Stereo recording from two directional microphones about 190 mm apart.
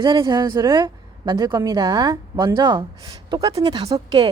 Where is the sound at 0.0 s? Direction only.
25° right (ahead or behind).